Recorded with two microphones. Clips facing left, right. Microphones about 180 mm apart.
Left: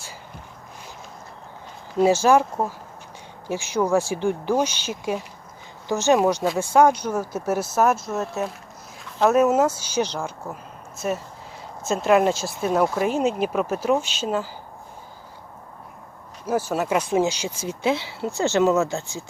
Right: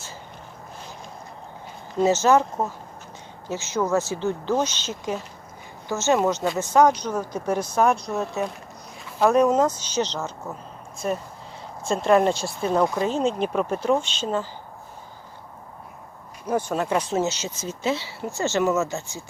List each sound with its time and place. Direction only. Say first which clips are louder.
2.0 s speech: left 1 dB; 10° left (ahead or behind)
9.0 s a sound: even; 10° right (ahead or behind)
9.3 s speech: left 1 dB; 5° left (ahead or behind)
16.5 s speech: left 1 dB; 5° left (ahead or behind)